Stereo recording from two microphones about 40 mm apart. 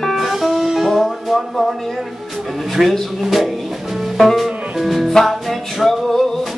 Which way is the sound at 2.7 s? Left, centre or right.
Centre.